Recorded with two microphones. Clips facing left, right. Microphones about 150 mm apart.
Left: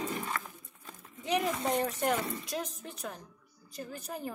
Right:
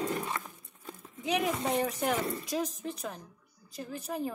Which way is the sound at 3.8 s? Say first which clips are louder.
Right 5 dB; centre (ahead or behind).